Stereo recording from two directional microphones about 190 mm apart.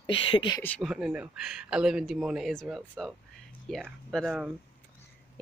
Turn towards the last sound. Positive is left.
turn(degrees=0)  # may be behind; listen again after turning